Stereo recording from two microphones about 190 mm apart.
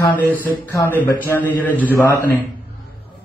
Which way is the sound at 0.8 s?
10° left (ahead or behind).